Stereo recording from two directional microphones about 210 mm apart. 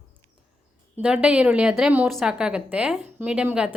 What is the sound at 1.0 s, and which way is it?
A woman's voice, 5° right (ahead or behind).